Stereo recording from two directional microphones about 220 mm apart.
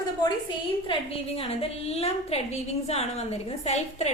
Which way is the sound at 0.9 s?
25° left (ahead or behind).